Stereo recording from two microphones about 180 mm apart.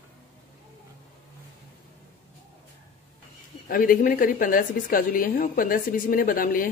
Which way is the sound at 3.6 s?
50° left (ahead or behind).